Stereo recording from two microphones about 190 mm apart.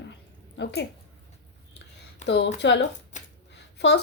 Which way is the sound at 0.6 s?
65° left (ahead or behind).